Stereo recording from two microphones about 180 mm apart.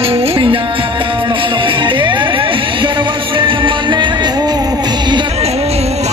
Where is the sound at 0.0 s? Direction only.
30° right (ahead or behind).